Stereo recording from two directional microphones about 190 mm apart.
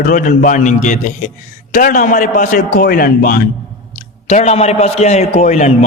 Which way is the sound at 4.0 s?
35° left (ahead or behind).